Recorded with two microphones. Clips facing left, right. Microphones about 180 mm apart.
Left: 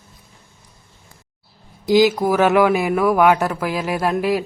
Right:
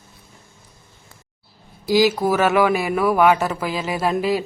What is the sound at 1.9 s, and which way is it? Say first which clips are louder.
Speech: left 2 dB; centre (ahead or behind).